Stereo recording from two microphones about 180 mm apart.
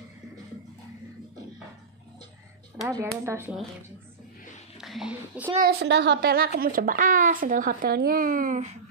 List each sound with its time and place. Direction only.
2.9 s speech: 15° right (ahead or behind)
4.7 s speech: centre (ahead or behind)
5.6 s a woman's voice: 65° right (ahead or behind); by 8.6 s 50° right (ahead or behind)